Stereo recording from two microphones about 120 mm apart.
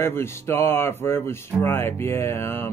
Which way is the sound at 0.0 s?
20° left (ahead or behind).